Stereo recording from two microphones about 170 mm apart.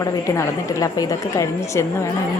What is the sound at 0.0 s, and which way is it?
A woman's voice, 20° left (ahead or behind).